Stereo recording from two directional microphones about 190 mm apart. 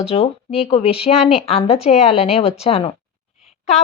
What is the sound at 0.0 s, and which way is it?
Speech, 30° left (ahead or behind).